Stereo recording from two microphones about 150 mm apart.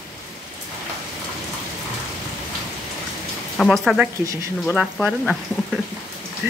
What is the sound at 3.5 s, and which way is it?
Speech, 5° left (ahead or behind).